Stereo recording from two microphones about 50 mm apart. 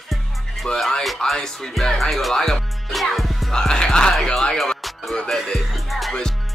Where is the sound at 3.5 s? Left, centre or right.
Centre.